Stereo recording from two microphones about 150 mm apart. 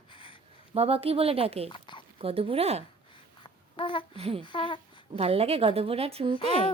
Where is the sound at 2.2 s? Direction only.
40° right (ahead or behind).